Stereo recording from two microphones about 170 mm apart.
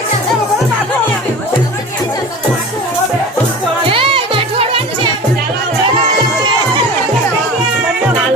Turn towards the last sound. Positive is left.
turn(degrees=-25)  # may be behind; listen again after turning